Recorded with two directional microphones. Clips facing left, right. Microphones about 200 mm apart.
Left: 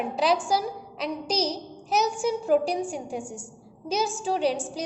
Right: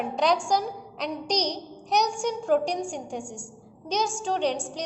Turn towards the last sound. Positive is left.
turn(degrees=5)  # may be behind; listen again after turning